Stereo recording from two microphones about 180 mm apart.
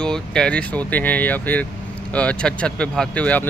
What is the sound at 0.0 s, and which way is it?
Speech, 5° left (ahead or behind).